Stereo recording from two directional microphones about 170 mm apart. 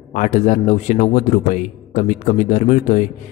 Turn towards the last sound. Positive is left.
turn(degrees=45)  # may be behind; listen again after turning